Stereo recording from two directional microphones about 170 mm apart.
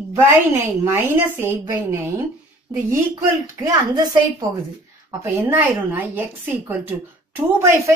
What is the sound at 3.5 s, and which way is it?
Speech, 20° right (ahead or behind).